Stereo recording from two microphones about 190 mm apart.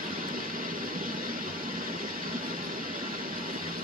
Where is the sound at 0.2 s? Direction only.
45° right (ahead or behind).